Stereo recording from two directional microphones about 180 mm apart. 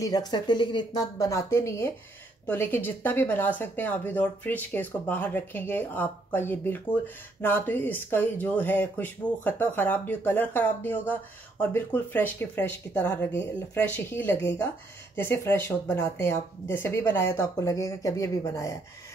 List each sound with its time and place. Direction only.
0.0 s a woman's voice: 20° left (ahead or behind)